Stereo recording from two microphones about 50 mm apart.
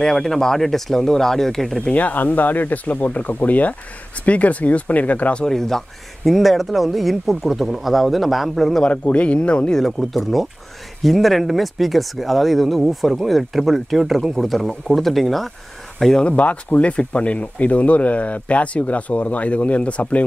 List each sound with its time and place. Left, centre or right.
0.0 s speech: centre
1.8 s speech: left
5.4 s speech: centre
8.8 s speech: left
9.8 s speech: centre
16.3 s speech: left